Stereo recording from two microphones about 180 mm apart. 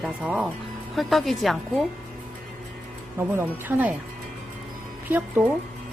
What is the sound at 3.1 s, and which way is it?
Speech, 15° right (ahead or behind).